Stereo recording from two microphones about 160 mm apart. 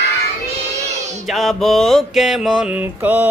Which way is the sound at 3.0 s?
10° right (ahead or behind).